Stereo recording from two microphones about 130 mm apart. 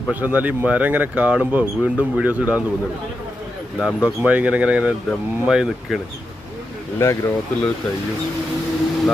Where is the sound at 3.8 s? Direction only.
10° right (ahead or behind).